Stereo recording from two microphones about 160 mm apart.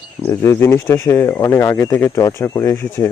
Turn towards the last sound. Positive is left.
turn(degrees=15)  # may be behind; listen again after turning